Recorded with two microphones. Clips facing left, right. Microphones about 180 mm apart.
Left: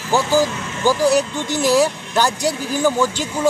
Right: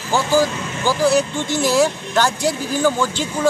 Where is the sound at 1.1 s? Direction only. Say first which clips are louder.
Right 1 dB; 40° left (ahead or behind).